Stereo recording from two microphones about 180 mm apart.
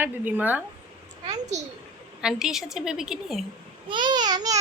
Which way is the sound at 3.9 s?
25° right (ahead or behind).